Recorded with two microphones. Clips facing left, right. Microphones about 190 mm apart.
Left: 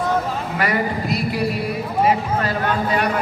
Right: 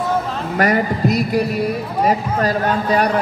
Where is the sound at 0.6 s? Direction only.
45° right (ahead or behind).